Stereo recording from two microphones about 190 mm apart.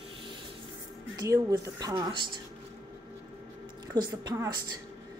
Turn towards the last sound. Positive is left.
turn(degrees=-20)  # may be behind; listen again after turning